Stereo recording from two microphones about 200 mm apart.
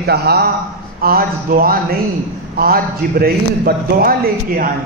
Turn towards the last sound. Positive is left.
turn(degrees=-45)  # may be behind; listen again after turning